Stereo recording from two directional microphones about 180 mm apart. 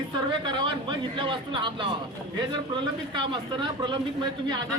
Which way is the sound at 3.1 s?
25° right (ahead or behind).